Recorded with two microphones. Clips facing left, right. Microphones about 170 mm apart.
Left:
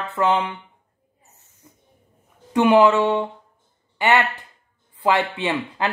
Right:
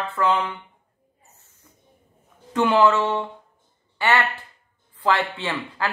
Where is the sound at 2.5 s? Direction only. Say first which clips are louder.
Left 3 dB; 15° left (ahead or behind).